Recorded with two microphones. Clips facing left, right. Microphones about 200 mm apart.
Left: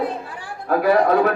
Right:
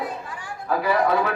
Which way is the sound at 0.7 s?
55° left (ahead or behind).